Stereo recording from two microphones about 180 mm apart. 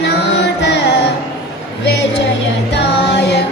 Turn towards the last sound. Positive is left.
turn(degrees=70)  # may be behind; listen again after turning